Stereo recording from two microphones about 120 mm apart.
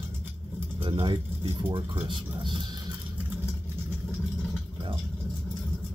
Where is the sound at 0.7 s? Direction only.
45° right (ahead or behind).